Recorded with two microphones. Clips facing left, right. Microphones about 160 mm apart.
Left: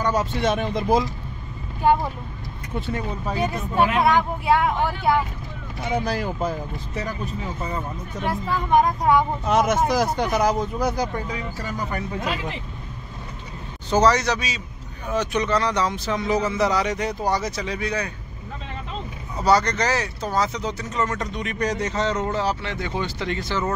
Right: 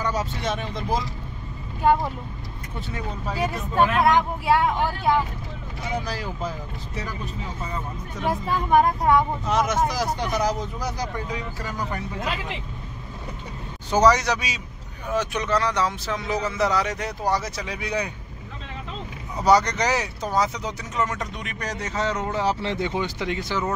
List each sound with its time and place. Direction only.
0.1 s speech: 60° left (ahead or behind)
3.3 s speech: centre (ahead or behind)
6.0 s speech: 55° left (ahead or behind)
8.7 s speech: 5° right (ahead or behind)
9.5 s speech: 55° left (ahead or behind)
13.8 s speech: 10° right (ahead or behind)
19.3 s speech: 15° right (ahead or behind)
22.5 s speech: 25° right (ahead or behind)